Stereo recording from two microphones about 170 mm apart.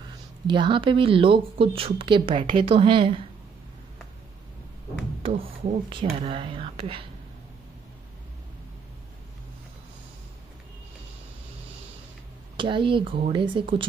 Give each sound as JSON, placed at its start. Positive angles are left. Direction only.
{"t": 0.5, "sound": "speech", "side_deg": -30}
{"t": 5.4, "sound": "speech", "side_deg": -35}
{"t": 12.5, "sound": "speech", "side_deg": -30}